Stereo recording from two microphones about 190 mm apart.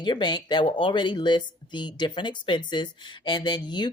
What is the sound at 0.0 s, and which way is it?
Speech, 25° left (ahead or behind).